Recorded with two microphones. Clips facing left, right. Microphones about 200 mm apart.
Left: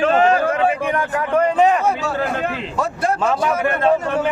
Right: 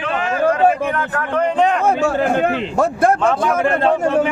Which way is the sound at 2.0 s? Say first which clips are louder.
Right 5 dB; 50° right (ahead or behind).